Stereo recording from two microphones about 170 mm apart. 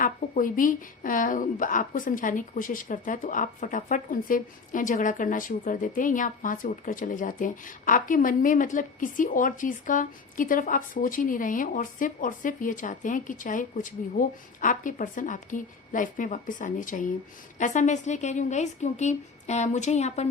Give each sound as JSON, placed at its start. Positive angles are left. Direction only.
{"t": 0.0, "sound": "speech", "side_deg": 50}